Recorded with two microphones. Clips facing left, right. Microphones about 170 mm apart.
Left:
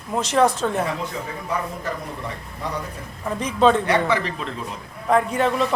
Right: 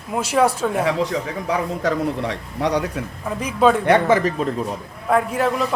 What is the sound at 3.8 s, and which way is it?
Speech, 50° right (ahead or behind).